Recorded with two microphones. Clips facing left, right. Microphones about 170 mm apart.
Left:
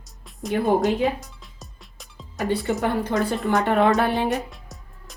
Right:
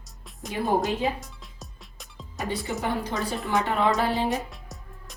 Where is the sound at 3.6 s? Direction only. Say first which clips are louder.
Left 7 dB; 60° left (ahead or behind).